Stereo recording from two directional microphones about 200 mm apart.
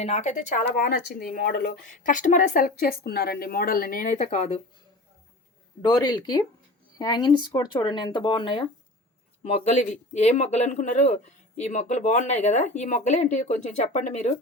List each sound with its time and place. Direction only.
0.0 s speech: 35° left (ahead or behind); by 1.7 s 55° left (ahead or behind)
2.0 s speech: 40° left (ahead or behind)
5.8 s speech: 20° left (ahead or behind); by 14.3 s 35° left (ahead or behind)